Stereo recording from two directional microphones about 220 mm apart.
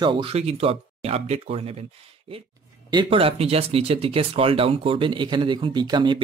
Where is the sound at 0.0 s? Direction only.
20° right (ahead or behind).